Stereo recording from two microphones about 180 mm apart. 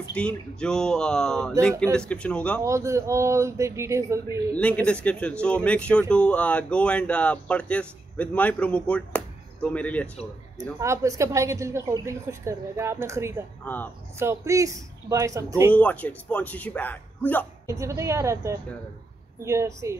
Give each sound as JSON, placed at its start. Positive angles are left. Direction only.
{"t": 0.1, "sound": "speech", "side_deg": 5}
{"t": 2.6, "sound": "a woman's voice", "side_deg": -15}
{"t": 4.6, "sound": "speech", "side_deg": 5}
{"t": 10.8, "sound": "a woman's voice", "side_deg": -15}
{"t": 15.7, "sound": "speech", "side_deg": 10}
{"t": 17.6, "sound": "a woman's voice", "side_deg": -15}